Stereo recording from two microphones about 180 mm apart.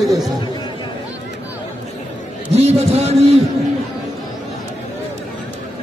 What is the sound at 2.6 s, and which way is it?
Speech, 35° right (ahead or behind).